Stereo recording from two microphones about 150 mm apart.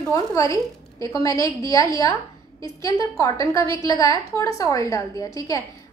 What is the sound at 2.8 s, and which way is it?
A woman's voice, 20° left (ahead or behind).